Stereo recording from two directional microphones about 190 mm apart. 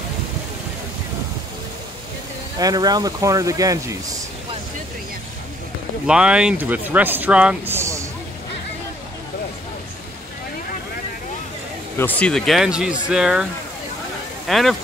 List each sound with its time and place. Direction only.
2.6 s speech: 20° right (ahead or behind)
6.0 s speech: 5° right (ahead or behind)
12.0 s speech: 10° left (ahead or behind)
14.5 s speech: centre (ahead or behind)